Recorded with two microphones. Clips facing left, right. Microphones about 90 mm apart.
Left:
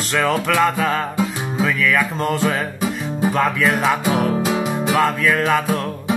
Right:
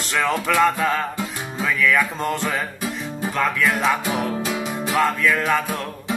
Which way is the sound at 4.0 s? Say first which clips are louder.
Left 5 dB; 20° left (ahead or behind).